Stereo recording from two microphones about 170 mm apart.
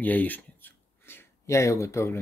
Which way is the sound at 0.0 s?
10° left (ahead or behind).